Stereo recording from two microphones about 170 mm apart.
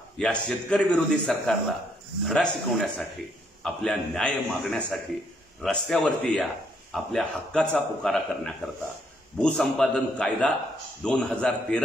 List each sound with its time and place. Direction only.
0.2 s speech: 5° left (ahead or behind)